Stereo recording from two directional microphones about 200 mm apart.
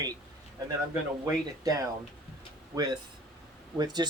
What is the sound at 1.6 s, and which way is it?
Speech, 15° right (ahead or behind).